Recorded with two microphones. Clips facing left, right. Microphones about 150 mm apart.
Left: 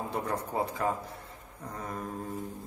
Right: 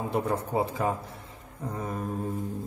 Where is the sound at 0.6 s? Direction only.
20° right (ahead or behind).